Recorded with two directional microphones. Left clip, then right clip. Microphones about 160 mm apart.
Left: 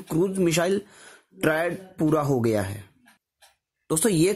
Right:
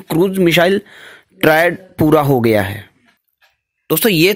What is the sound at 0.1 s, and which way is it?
Speech, 30° right (ahead or behind).